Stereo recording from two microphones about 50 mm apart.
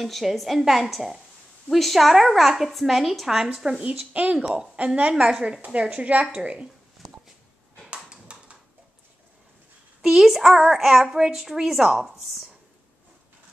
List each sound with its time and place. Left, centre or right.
0.0 s a woman's voice: centre
4.1 s a woman's voice: right
5.1 s a child's voice: centre
5.6 s a woman's voice: right
7.9 s a sound: right
10.0 s a child's voice: centre